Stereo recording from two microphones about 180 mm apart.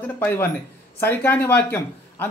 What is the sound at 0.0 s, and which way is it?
Speech, 10° left (ahead or behind).